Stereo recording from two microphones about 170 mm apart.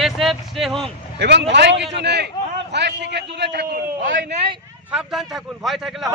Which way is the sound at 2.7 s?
90° right.